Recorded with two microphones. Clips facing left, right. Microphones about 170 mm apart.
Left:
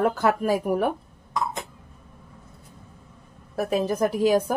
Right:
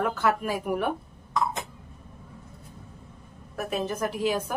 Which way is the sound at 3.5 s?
35° left (ahead or behind).